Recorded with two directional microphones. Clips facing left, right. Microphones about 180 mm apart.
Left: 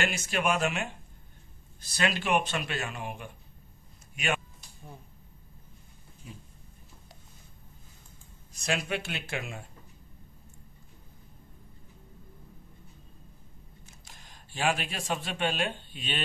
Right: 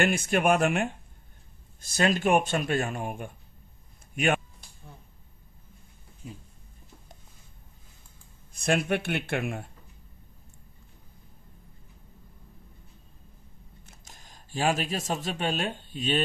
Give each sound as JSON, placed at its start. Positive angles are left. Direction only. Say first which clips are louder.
{"t": 0.0, "sound": "speech", "louder": "right 6 dB", "side_deg": -55}
{"t": 4.1, "sound": "a sound", "louder": "right 6 dB", "side_deg": -55}
{"t": 8.5, "sound": "speech", "louder": "right 6 dB", "side_deg": -55}
{"t": 14.0, "sound": "speech", "louder": "right 1 dB", "side_deg": -45}